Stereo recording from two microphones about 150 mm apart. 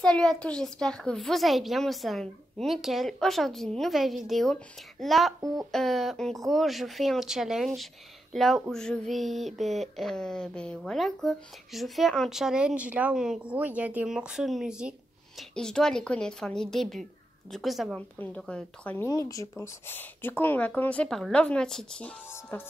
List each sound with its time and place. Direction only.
0.0 s a woman's voice: 5° left (ahead or behind)
19.0 s a woman's voice: 20° left (ahead or behind); by 22.6 s 5° left (ahead or behind)